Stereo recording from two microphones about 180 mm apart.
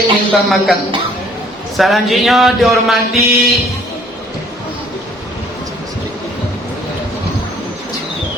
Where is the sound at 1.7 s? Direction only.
Centre (ahead or behind).